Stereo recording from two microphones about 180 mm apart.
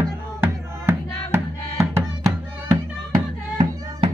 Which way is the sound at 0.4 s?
10° right (ahead or behind).